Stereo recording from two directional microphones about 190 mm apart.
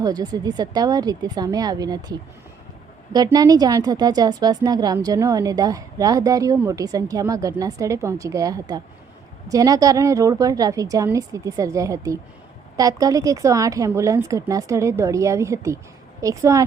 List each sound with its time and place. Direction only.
0.0 s a woman's voice: 20° right (ahead or behind)